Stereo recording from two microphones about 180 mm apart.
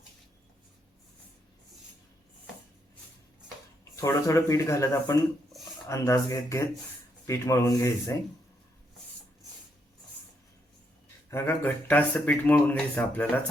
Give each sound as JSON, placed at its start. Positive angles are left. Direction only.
{"t": 3.9, "sound": "speech", "side_deg": 15}
{"t": 11.3, "sound": "speech", "side_deg": 15}